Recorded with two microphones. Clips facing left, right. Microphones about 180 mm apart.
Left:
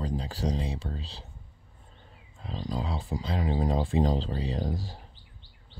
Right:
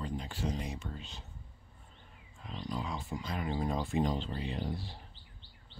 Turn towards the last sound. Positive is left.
turn(degrees=40)  # may be behind; listen again after turning